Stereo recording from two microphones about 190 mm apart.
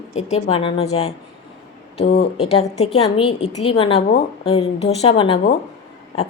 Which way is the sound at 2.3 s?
30° left (ahead or behind).